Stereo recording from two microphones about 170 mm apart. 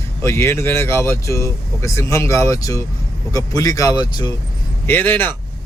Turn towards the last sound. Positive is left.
turn(degrees=10)  # may be behind; listen again after turning